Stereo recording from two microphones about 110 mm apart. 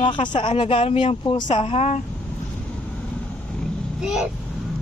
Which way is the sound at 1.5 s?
75° left (ahead or behind).